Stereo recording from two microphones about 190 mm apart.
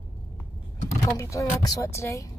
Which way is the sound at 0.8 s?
15° left (ahead or behind).